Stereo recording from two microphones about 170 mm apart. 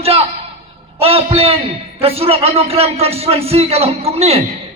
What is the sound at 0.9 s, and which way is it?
A man's voice, 35° right (ahead or behind).